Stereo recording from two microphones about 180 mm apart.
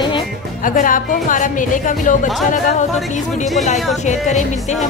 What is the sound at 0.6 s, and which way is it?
Speech, 50° left (ahead or behind).